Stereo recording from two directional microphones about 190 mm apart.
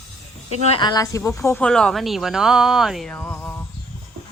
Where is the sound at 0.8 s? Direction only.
20° left (ahead or behind).